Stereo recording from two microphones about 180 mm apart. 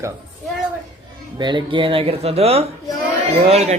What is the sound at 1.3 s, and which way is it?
A man's voice, 25° right (ahead or behind).